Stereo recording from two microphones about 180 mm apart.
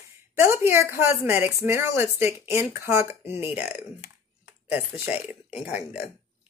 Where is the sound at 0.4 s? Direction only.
15° right (ahead or behind).